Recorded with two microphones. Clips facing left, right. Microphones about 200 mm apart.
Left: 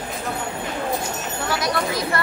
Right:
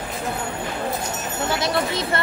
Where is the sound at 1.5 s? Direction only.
25° right (ahead or behind).